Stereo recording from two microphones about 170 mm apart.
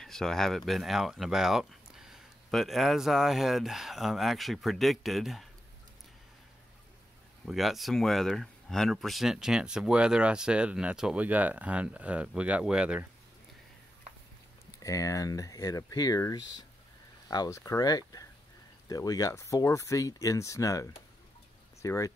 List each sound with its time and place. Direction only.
0.0 s speech: centre (ahead or behind)
7.4 s speech: centre (ahead or behind)
14.8 s speech: 20° left (ahead or behind)